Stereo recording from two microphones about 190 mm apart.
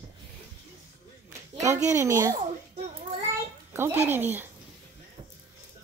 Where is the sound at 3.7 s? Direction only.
10° right (ahead or behind).